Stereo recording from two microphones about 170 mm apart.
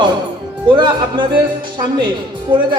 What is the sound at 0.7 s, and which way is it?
Speech, 30° right (ahead or behind).